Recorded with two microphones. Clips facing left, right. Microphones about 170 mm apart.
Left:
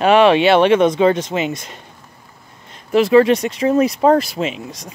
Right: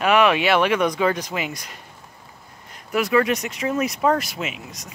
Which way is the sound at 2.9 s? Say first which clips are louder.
Left 8 dB; 30° left (ahead or behind).